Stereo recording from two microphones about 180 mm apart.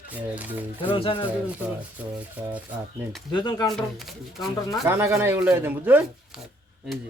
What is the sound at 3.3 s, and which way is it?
Speech, 25° left (ahead or behind).